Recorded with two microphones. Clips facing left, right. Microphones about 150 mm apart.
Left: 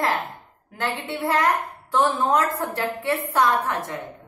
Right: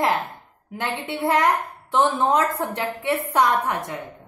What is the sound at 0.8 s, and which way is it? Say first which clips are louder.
A woman's voice: right 1 dB; 20° right (ahead or behind).